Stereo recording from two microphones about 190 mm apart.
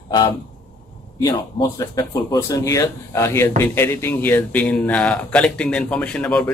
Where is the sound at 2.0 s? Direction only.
15° left (ahead or behind).